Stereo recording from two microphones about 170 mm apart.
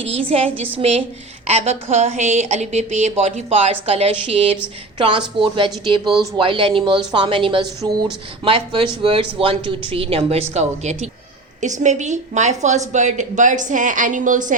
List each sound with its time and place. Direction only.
0.3 s a woman's voice: 35° right (ahead or behind)